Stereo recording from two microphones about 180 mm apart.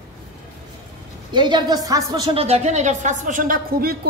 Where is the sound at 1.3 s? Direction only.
25° right (ahead or behind).